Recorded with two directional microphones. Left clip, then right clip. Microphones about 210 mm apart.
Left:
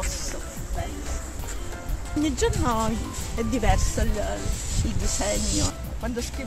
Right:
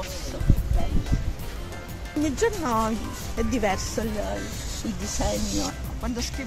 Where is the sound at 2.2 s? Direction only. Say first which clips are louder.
Even; 25° right (ahead or behind).